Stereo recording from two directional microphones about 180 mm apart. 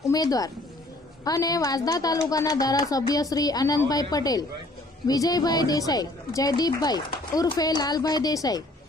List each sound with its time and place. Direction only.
0.0 s speech: 20° left (ahead or behind)